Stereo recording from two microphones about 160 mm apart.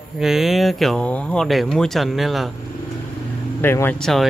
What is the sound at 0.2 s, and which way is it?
Speech, centre (ahead or behind).